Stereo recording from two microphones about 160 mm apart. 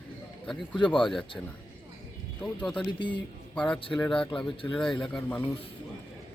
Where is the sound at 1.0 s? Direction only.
Centre (ahead or behind).